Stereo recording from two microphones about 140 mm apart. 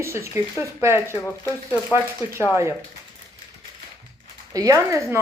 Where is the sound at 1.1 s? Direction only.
20° left (ahead or behind).